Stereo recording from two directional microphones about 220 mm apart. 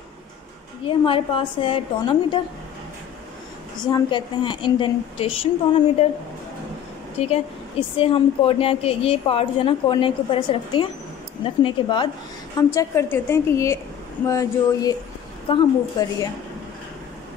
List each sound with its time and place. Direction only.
0.8 s a woman's voice: 25° left (ahead or behind)
3.8 s a woman's voice: 20° left (ahead or behind)
7.2 s a woman's voice: 25° left (ahead or behind)